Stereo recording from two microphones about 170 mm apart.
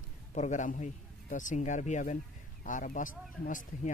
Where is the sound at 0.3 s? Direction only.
45° left (ahead or behind).